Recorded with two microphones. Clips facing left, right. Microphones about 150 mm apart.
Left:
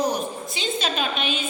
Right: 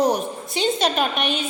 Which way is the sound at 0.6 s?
60° right (ahead or behind).